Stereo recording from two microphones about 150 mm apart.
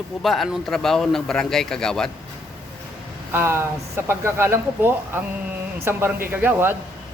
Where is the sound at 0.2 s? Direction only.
Centre (ahead or behind).